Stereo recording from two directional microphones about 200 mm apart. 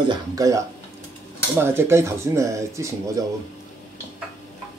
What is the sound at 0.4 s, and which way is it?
Speech, 15° right (ahead or behind).